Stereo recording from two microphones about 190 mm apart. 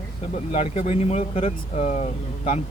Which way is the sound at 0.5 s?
35° left (ahead or behind).